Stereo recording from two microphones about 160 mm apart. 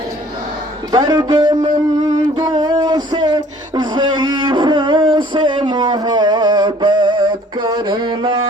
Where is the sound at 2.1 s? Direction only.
25° right (ahead or behind).